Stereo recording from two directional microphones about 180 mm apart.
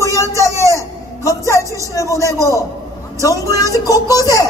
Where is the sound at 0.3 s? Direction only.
20° right (ahead or behind).